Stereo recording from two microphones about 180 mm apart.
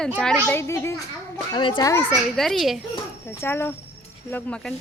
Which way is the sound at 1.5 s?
25° left (ahead or behind).